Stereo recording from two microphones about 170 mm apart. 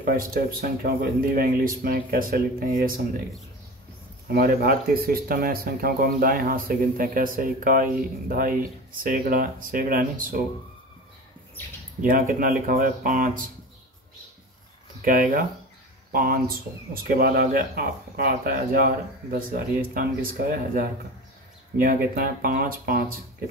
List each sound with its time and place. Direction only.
0.0 s speech: 55° right (ahead or behind)
4.3 s speech: 60° right (ahead or behind)
11.6 s speech: 10° left (ahead or behind)
12.0 s speech: 55° right (ahead or behind)
15.0 s speech: 55° right (ahead or behind)